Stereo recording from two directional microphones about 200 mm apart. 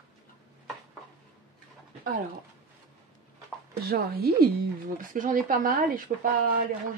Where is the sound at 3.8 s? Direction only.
50° right (ahead or behind).